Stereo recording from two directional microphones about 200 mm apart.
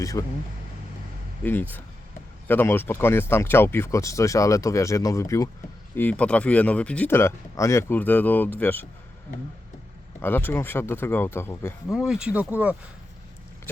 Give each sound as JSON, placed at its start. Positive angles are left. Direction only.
{"t": 0.0, "sound": "speech", "side_deg": 15}
{"t": 2.5, "sound": "speech", "side_deg": 10}
{"t": 10.2, "sound": "speech", "side_deg": 10}
{"t": 11.9, "sound": "speech", "side_deg": -5}